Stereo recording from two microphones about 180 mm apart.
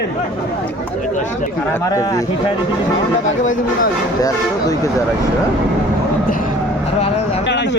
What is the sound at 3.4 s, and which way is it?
Speech, 45° left (ahead or behind).